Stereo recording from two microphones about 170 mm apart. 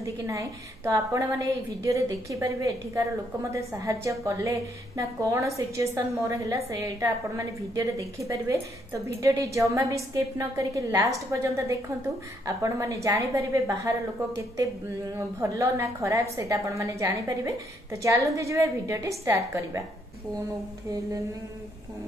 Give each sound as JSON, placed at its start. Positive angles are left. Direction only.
{"t": 0.0, "sound": "a woman's voice", "side_deg": -20}